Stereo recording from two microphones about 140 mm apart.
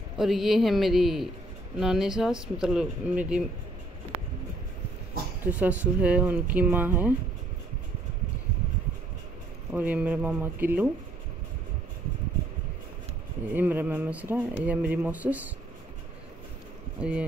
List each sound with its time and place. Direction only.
0.2 s speech: centre (ahead or behind)
5.4 s speech: 10° right (ahead or behind)
9.7 s speech: 10° right (ahead or behind)
13.5 s speech: 15° right (ahead or behind)
17.0 s speech: 10° right (ahead or behind)